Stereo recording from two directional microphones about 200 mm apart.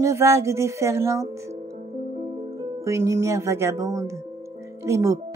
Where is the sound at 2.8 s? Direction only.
15° right (ahead or behind).